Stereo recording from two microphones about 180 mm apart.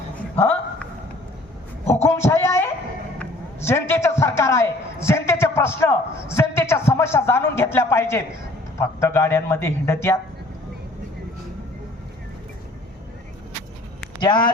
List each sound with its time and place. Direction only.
2.0 s a sound: 15° left (ahead or behind)
6.3 s a man's voice: 15° left (ahead or behind)
14.2 s speech: 25° left (ahead or behind)